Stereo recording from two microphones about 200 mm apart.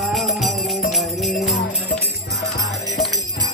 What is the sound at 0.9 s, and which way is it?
Jingle bell, centre (ahead or behind).